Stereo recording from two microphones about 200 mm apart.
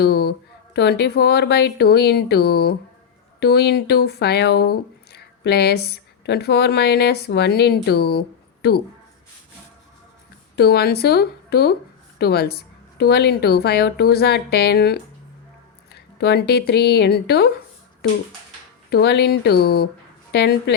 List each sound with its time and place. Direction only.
0.0 s a woman's voice: 55° left (ahead or behind)
10.5 s a woman's voice: 55° left (ahead or behind)
18.9 s a woman's voice: 55° left (ahead or behind)